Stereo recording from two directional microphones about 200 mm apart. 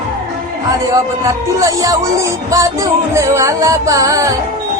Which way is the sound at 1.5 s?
15° right (ahead or behind).